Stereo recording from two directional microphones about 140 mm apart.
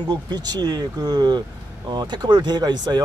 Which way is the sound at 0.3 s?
30° right (ahead or behind).